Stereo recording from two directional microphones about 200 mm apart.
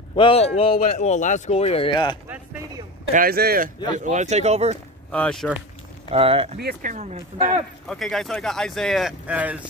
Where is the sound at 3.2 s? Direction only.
50° right (ahead or behind).